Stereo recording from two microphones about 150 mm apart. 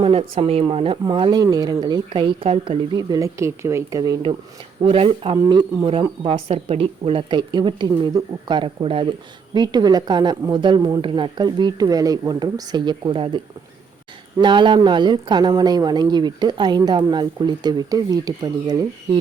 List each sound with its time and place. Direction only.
0.0 s speech: 40° right (ahead or behind); by 4.2 s 20° right (ahead or behind)
4.8 s speech: 35° right (ahead or behind)